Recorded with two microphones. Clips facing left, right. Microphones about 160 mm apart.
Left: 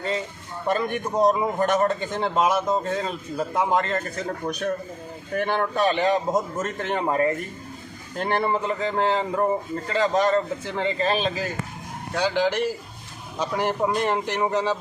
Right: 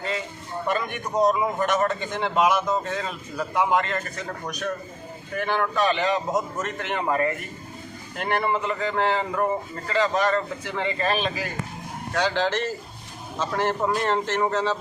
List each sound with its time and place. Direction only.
0.7 s a man's voice: 35° left (ahead or behind)
5.3 s a man's voice: 40° left (ahead or behind)
12.2 s speech: 10° left (ahead or behind)